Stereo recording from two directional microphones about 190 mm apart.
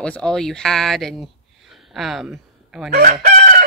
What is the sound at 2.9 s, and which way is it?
Chicken, 55° right (ahead or behind).